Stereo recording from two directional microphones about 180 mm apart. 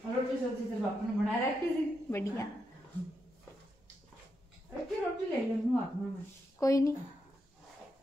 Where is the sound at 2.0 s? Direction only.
15° left (ahead or behind).